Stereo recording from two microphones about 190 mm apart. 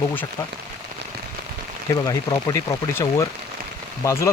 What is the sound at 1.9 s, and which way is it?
Speech, 20° left (ahead or behind).